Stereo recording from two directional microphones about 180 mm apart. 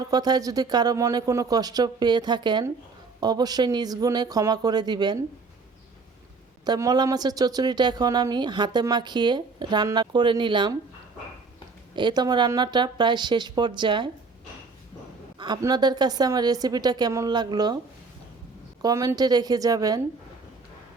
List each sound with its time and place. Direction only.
0.0 s speech: 20° right (ahead or behind)
6.7 s speech: 20° right (ahead or behind)
11.9 s speech: 25° right (ahead or behind)
15.4 s speech: 25° right (ahead or behind)
18.8 s speech: 20° right (ahead or behind)